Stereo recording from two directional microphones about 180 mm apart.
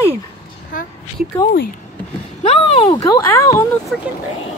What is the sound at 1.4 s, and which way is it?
Speech, 55° left (ahead or behind).